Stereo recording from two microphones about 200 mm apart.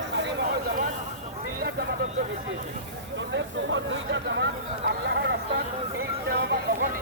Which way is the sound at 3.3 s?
65° right (ahead or behind).